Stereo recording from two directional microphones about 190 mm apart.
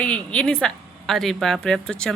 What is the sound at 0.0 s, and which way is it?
A woman's voice, 5° left (ahead or behind).